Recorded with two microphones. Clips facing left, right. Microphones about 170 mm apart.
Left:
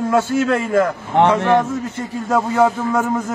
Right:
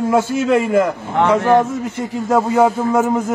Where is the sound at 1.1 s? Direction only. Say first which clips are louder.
Left 3 dB; 25° left (ahead or behind).